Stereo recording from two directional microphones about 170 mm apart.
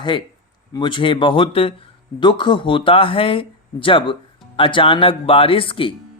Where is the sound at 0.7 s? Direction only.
30° left (ahead or behind).